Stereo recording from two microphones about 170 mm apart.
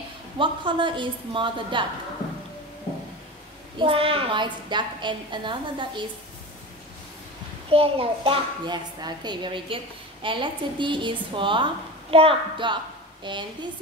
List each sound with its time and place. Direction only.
0.4 s a woman's voice: 30° right (ahead or behind)
3.7 s a woman's voice: 30° right (ahead or behind)
7.7 s a woman's voice: 35° right (ahead or behind)